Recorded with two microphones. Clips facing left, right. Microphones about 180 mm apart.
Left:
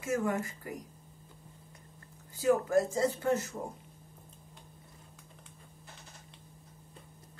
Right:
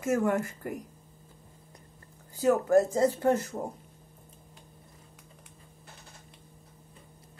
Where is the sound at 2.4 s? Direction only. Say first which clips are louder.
Right 4 dB; 45° right (ahead or behind).